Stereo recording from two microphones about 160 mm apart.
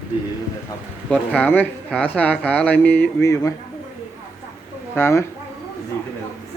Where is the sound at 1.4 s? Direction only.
10° left (ahead or behind).